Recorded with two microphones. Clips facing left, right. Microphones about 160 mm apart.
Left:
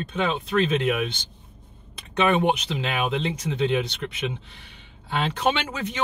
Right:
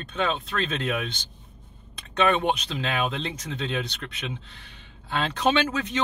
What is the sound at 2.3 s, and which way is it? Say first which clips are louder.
Speech: left 4 dB; 15° left (ahead or behind).